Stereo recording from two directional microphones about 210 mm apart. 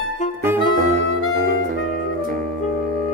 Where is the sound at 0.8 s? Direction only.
35° right (ahead or behind).